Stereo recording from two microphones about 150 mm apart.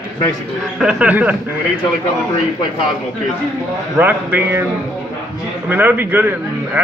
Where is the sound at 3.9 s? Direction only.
10° right (ahead or behind).